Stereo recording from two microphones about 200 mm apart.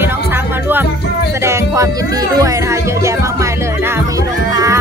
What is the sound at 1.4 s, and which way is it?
Speech, 15° right (ahead or behind).